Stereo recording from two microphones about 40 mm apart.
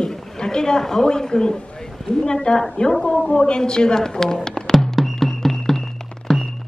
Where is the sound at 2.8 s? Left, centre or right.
Left; by 5.2 s centre.